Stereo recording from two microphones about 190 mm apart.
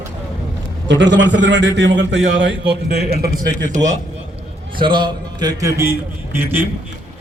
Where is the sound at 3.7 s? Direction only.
40° right (ahead or behind).